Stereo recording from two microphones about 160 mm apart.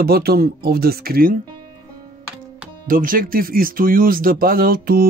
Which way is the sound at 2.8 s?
60° right (ahead or behind).